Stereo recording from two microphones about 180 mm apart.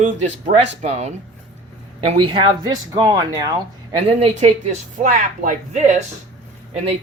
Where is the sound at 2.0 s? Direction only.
25° right (ahead or behind).